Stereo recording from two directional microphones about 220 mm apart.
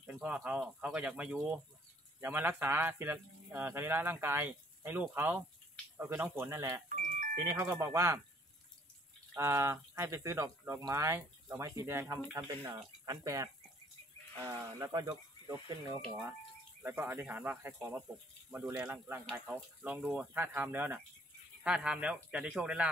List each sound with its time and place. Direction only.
0.0 s speech: 5° right (ahead or behind)
6.9 s music: 40° right (ahead or behind)
7.4 s speech: 10° right (ahead or behind)
9.3 s speech: 10° right (ahead or behind)